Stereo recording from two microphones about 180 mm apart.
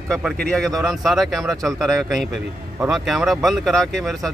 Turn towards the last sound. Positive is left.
turn(degrees=0)  # may be behind; listen again after turning